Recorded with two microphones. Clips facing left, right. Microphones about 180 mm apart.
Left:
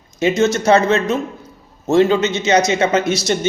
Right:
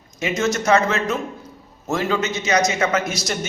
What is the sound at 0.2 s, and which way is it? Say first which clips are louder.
A man's voice: left 6 dB; 30° left (ahead or behind).